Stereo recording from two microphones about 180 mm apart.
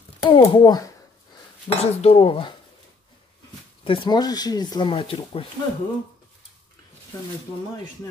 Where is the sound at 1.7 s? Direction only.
35° left (ahead or behind).